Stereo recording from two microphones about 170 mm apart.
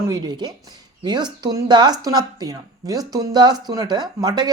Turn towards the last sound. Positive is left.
turn(degrees=-25)  # may be behind; listen again after turning